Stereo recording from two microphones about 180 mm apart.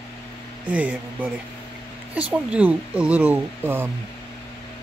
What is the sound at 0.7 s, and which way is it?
Speech, 5° right (ahead or behind).